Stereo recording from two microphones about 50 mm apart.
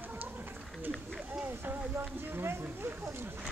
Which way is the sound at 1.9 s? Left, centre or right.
Right.